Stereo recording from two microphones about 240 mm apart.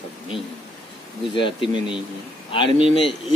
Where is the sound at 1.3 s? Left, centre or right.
Left.